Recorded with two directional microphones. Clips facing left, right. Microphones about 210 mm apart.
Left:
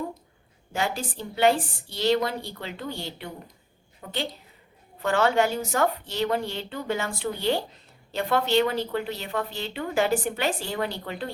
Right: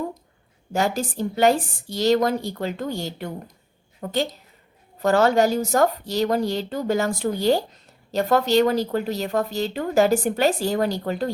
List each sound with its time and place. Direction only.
0.7 s a woman's voice: 40° right (ahead or behind)